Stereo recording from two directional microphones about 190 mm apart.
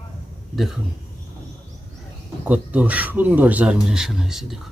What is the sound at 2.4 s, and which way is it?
Speech, 5° right (ahead or behind).